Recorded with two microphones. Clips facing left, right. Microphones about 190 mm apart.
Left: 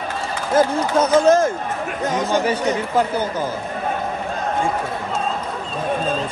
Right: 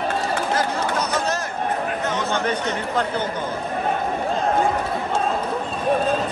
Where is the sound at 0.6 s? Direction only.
50° left (ahead or behind).